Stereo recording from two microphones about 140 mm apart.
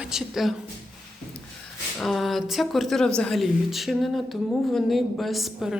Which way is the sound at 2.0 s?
Centre (ahead or behind).